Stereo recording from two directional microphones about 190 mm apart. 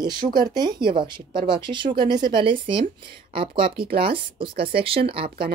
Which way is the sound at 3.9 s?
50° right (ahead or behind).